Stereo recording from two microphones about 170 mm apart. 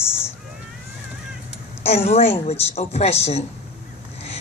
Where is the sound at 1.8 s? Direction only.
35° left (ahead or behind).